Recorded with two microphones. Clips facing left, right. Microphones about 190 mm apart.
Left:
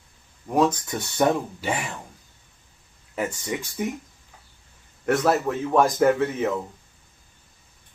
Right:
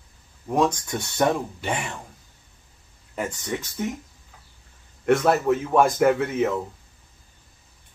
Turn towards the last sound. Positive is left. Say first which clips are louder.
# even
turn(degrees=0)  # may be behind; listen again after turning